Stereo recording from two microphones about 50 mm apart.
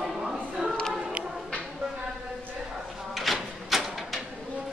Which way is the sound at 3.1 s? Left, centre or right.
Centre.